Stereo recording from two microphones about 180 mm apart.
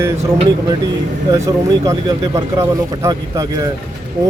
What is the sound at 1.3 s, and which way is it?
Speech, 15° right (ahead or behind).